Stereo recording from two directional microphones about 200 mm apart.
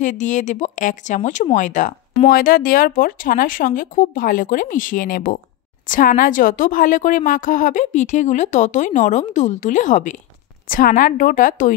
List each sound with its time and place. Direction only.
0.0 s a woman's voice: 40° left (ahead or behind)